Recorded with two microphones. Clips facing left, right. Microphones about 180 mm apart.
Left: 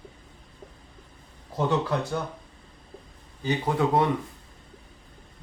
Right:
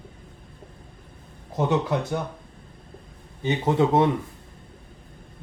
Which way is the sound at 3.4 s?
25° right (ahead or behind).